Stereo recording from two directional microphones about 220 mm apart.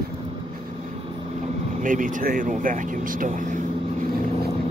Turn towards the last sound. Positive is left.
turn(degrees=-40)  # may be behind; listen again after turning